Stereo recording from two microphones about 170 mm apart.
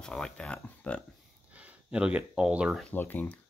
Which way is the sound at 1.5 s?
10° right (ahead or behind).